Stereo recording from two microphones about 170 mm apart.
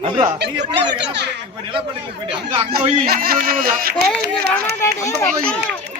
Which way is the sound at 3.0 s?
65° right (ahead or behind).